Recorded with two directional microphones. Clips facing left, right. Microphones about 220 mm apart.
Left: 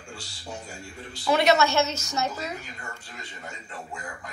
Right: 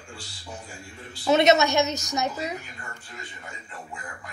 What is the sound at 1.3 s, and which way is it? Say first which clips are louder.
A woman's voice: right 2 dB; 20° right (ahead or behind).